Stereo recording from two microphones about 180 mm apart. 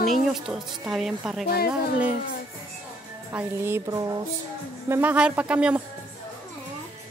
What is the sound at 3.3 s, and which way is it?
Speech, 15° right (ahead or behind).